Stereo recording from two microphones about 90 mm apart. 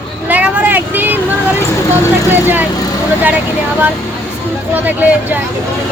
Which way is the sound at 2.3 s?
20° right (ahead or behind).